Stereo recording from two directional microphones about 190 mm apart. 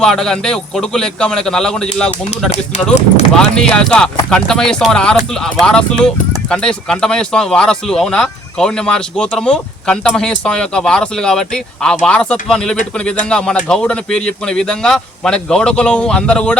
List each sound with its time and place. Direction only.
0.0 s speech: 5° left (ahead or behind)
2.5 s speech: 35° left (ahead or behind)
3.3 s speech: 5° left (ahead or behind)